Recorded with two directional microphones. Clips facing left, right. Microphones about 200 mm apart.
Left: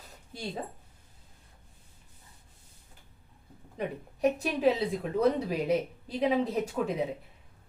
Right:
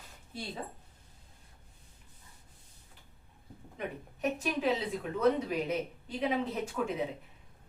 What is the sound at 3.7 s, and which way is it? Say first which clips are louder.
Speech: left 4 dB; 35° left (ahead or behind).